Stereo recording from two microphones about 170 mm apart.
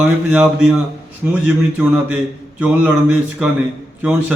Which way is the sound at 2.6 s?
10° right (ahead or behind).